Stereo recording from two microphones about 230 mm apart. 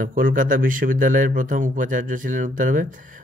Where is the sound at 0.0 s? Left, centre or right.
Right.